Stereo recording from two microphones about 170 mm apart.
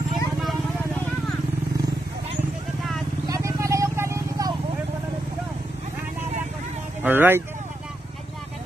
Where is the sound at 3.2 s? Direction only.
20° right (ahead or behind).